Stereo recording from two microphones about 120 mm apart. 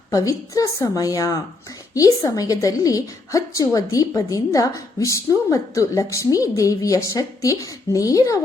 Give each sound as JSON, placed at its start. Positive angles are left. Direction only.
{"t": 0.1, "sound": "a woman's voice", "side_deg": 30}